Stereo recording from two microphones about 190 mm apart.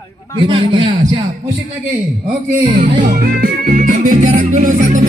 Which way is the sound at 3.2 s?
50° right (ahead or behind).